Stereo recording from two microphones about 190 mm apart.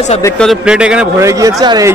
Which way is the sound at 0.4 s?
Centre (ahead or behind).